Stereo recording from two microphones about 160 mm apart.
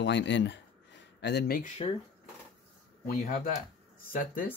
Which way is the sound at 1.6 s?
50° left (ahead or behind).